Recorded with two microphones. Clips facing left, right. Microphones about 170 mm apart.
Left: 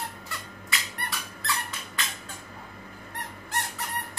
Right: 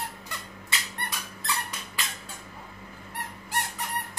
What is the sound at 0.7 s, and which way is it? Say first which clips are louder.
Squeak: left 1 dB; 25° right (ahead or behind).